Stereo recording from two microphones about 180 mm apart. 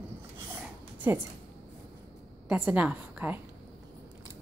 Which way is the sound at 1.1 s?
10° right (ahead or behind).